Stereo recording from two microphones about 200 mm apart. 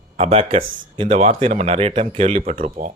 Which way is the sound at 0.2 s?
30° right (ahead or behind).